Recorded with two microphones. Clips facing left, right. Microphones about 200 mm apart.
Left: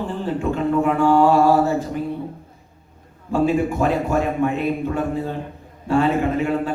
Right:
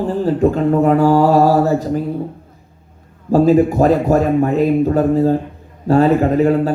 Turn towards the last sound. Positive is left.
turn(degrees=-40)  # may be behind; listen again after turning